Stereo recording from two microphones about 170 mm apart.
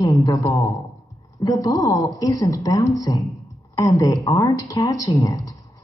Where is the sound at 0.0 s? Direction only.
20° left (ahead or behind).